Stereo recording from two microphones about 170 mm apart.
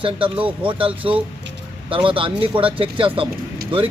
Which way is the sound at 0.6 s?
30° right (ahead or behind).